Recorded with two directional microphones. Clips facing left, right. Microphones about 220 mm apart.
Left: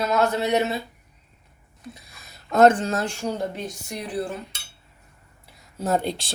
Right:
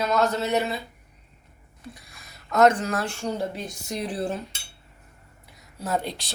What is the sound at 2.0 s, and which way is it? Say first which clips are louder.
Speech: even; 30° left (ahead or behind).